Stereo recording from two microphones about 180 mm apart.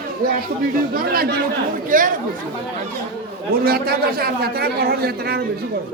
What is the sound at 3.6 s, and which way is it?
A man's voice, 60° right (ahead or behind).